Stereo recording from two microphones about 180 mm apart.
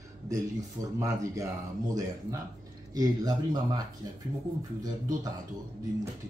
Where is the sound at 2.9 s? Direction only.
20° right (ahead or behind).